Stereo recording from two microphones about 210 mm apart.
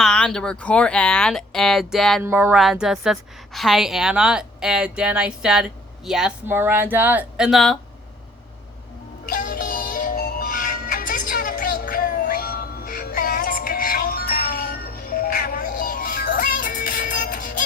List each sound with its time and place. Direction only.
0.0 s a woman's voice: 5° left (ahead or behind)
2.2 s a woman's voice: 10° right (ahead or behind)
9.2 s music: 40° left (ahead or behind)